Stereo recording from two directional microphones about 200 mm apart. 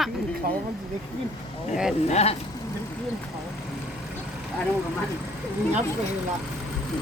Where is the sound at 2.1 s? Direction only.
30° left (ahead or behind).